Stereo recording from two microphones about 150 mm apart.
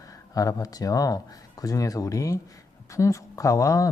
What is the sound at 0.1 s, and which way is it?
Speech, 25° left (ahead or behind).